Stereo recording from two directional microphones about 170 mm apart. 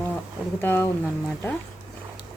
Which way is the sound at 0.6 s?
15° left (ahead or behind).